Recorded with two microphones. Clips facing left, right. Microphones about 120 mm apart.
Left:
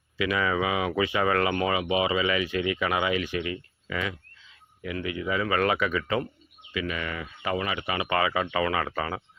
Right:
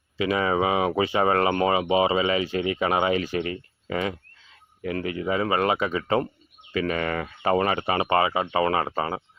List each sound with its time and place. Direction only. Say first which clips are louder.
0.2 s speech: right 3 dB; 30° right (ahead or behind)
6.7 s speech: right 6 dB; 45° right (ahead or behind)